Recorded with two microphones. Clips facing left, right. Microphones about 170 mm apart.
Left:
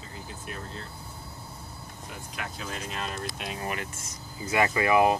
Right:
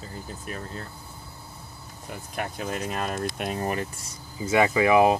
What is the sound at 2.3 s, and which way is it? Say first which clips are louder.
Speech: right 7 dB; 50° right (ahead or behind).